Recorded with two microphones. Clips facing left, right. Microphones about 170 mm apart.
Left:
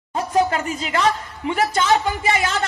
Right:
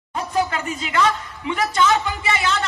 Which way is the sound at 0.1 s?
45° left (ahead or behind).